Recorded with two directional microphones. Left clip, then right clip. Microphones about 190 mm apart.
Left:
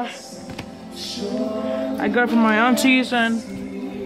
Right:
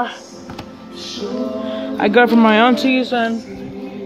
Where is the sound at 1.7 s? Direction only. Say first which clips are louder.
Right 8 dB; 20° right (ahead or behind).